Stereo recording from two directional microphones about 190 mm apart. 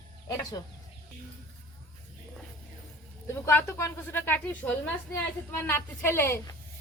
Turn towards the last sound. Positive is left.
turn(degrees=15)  # may be behind; listen again after turning